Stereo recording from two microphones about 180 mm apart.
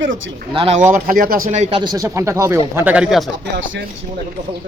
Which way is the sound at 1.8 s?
20° right (ahead or behind).